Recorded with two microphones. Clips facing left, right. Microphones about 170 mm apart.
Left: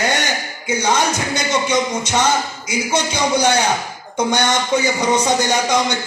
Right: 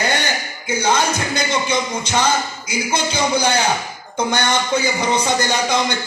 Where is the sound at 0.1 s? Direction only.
15° left (ahead or behind).